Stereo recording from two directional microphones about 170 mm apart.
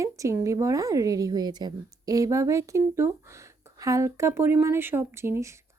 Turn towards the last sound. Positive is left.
turn(degrees=-15)  # may be behind; listen again after turning